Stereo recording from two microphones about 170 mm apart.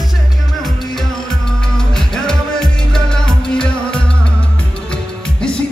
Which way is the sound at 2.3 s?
5° left (ahead or behind).